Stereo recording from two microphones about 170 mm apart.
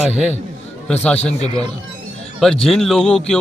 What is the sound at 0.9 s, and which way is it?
Speech, 5° left (ahead or behind).